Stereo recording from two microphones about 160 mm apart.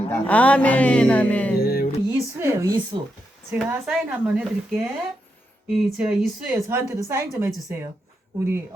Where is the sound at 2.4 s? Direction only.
20° right (ahead or behind).